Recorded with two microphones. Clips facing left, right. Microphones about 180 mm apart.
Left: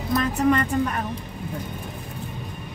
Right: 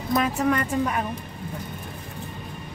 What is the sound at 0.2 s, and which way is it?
Speech, 10° right (ahead or behind).